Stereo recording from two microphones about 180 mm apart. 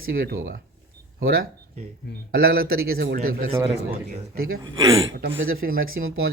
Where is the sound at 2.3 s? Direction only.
55° right (ahead or behind).